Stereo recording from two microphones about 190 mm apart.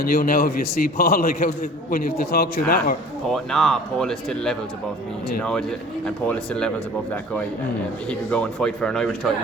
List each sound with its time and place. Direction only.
0.0 s a man's voice: 50° left (ahead or behind)
3.3 s speech: centre (ahead or behind)